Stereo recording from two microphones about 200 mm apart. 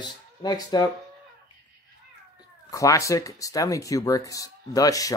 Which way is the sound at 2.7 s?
15° left (ahead or behind).